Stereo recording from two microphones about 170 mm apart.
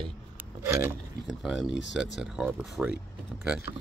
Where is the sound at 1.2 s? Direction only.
Centre (ahead or behind).